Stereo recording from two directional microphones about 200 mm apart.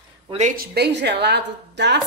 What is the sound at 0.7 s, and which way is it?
Speech, 55° right (ahead or behind).